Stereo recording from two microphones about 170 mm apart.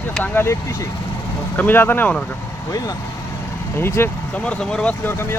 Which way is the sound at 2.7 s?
20° left (ahead or behind).